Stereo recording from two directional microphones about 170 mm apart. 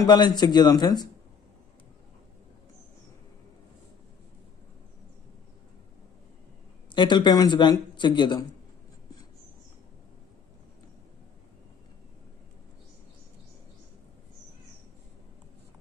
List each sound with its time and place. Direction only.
0.0 s speech: 25° left (ahead or behind)
6.9 s speech: 25° left (ahead or behind)